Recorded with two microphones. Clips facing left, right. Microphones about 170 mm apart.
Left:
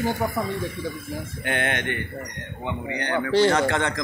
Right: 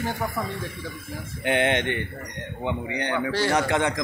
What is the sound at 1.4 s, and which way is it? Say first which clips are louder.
Speech: right 5 dB; 20° right (ahead or behind).